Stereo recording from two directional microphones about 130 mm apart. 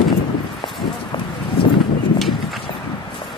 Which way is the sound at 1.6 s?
45° left (ahead or behind).